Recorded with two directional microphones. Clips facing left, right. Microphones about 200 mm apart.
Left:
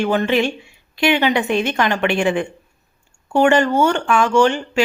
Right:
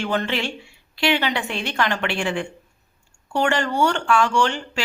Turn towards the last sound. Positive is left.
turn(degrees=15)  # may be behind; listen again after turning